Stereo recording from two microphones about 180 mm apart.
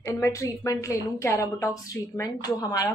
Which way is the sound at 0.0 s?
15° left (ahead or behind).